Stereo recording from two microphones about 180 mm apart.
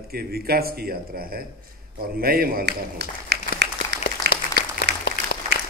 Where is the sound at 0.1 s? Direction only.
60° right (ahead or behind).